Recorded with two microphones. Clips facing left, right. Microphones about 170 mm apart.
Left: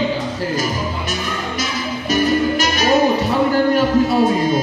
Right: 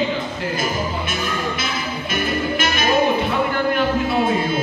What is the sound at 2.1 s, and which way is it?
Music, 40° left (ahead or behind).